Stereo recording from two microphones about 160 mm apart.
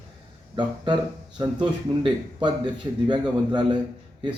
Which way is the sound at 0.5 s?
30° right (ahead or behind).